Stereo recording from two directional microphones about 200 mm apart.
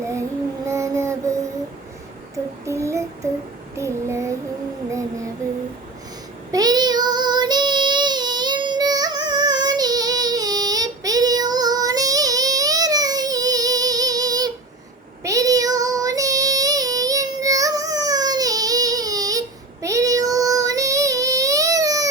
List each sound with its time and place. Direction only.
0.0 s child singing: 15° right (ahead or behind)
2.3 s a sound: 15° right (ahead or behind)
6.5 s child singing: 20° right (ahead or behind)